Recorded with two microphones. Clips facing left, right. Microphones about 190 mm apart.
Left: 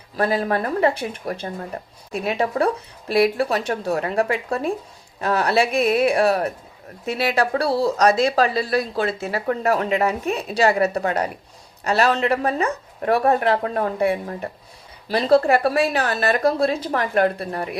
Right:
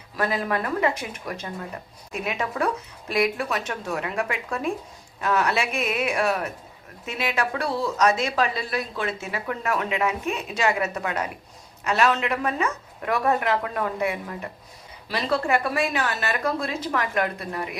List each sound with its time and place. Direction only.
0.2 s speech: 35° left (ahead or behind)